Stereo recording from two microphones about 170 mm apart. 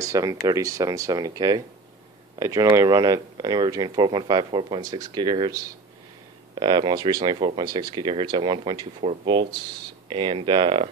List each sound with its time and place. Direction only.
0.0 s speech: 20° right (ahead or behind)